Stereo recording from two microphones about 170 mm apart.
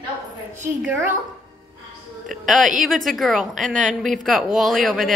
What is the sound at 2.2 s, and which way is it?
Speech, centre (ahead or behind).